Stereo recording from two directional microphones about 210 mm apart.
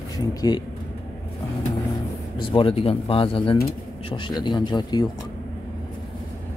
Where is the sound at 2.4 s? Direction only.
25° left (ahead or behind).